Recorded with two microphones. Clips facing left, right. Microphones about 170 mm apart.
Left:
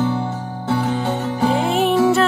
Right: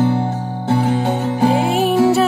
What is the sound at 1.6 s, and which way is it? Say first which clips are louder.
Music: right 1 dB; centre (ahead or behind).